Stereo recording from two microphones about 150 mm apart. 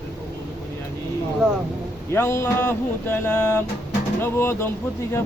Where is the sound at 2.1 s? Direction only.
15° left (ahead or behind).